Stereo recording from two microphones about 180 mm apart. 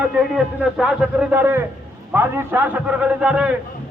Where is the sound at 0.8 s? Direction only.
5° right (ahead or behind).